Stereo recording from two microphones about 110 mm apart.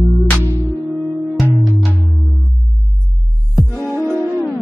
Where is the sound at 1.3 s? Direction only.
Centre (ahead or behind).